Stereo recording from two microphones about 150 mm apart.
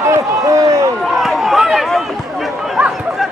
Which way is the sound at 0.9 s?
Centre (ahead or behind).